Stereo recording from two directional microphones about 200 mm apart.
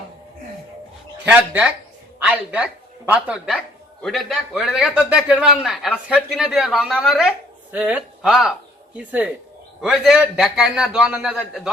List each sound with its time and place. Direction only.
1.2 s a woman's voice: 5° right (ahead or behind)